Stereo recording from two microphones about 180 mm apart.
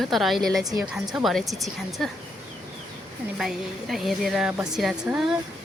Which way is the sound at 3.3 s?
Centre (ahead or behind).